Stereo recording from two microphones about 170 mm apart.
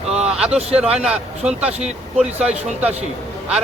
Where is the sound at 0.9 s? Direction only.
5° right (ahead or behind).